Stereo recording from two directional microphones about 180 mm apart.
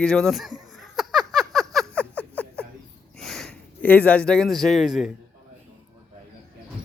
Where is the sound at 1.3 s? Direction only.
Centre (ahead or behind).